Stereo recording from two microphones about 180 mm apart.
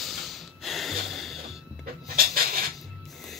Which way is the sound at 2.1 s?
55° right (ahead or behind).